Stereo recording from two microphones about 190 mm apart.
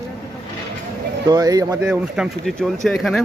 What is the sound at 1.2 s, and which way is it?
Speech, 20° right (ahead or behind).